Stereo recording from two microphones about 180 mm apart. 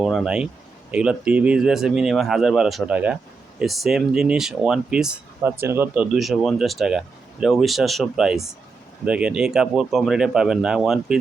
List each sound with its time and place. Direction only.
0.0 s speech: centre (ahead or behind)